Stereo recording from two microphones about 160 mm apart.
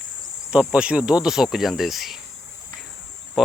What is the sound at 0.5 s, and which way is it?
Speech, 5° right (ahead or behind).